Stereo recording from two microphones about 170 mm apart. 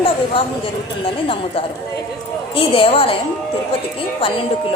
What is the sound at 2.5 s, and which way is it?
Speech, 35° left (ahead or behind).